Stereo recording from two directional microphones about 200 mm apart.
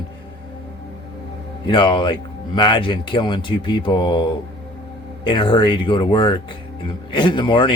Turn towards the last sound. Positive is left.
turn(degrees=25)  # may be behind; listen again after turning